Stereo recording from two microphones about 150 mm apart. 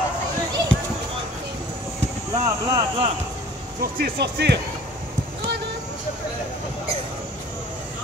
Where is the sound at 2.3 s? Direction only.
20° right (ahead or behind).